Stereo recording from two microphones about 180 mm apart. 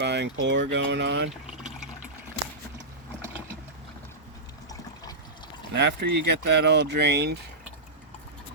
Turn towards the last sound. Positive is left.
turn(degrees=-70)  # may be behind; listen again after turning